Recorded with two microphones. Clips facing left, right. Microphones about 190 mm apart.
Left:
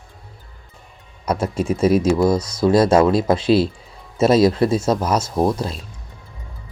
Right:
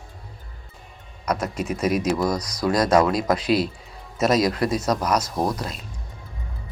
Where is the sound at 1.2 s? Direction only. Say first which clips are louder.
Left 5 dB; 30° left (ahead or behind).